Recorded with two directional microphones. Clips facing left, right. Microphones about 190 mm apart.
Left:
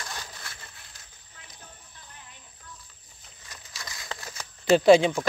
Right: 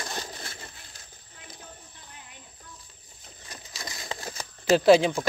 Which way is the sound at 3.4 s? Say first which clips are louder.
Right 3 dB; 35° right (ahead or behind).